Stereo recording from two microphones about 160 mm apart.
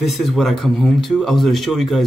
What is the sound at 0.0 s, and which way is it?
Speech, centre (ahead or behind).